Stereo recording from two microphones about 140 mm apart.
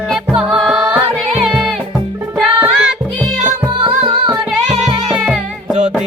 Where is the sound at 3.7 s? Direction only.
35° right (ahead or behind).